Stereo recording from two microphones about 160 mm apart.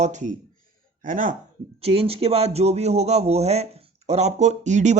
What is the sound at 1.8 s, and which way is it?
Speech, 35° right (ahead or behind).